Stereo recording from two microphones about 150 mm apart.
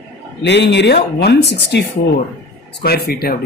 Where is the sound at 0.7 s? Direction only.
90° left.